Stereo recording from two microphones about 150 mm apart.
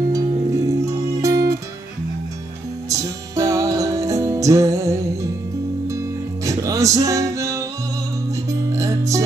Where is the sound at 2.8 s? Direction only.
20° right (ahead or behind).